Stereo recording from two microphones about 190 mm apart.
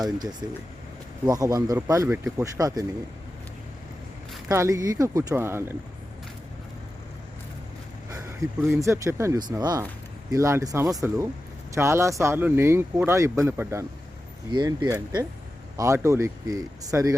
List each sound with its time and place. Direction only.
0.0 s speech: 20° right (ahead or behind)
2.6 s speech: 20° right (ahead or behind)
4.4 s speech: 15° right (ahead or behind)
8.1 s a sound: 15° right (ahead or behind)
8.7 s speech: 15° right (ahead or behind)